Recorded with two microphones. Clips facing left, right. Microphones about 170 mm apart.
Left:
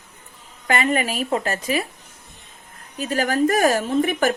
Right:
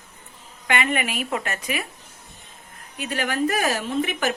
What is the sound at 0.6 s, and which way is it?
A woman's voice, 35° left (ahead or behind).